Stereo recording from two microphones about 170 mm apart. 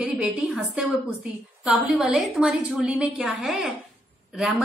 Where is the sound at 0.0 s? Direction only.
5° right (ahead or behind).